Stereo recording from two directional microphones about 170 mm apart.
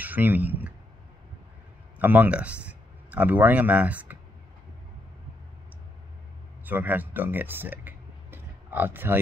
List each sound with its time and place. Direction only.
0.0 s a man's voice: 10° right (ahead or behind)
2.0 s speech: 10° right (ahead or behind)
6.6 s speech: 10° right (ahead or behind)